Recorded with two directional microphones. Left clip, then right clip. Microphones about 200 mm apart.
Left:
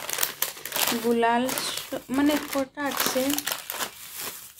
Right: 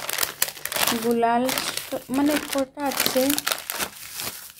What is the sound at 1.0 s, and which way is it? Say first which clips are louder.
Speech: right 1 dB; 15° right (ahead or behind).